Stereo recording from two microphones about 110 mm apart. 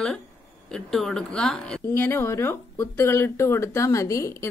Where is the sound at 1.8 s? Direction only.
20° left (ahead or behind).